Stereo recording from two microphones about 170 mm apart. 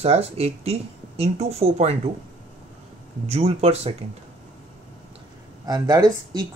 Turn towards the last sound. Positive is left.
turn(degrees=-25)  # may be behind; listen again after turning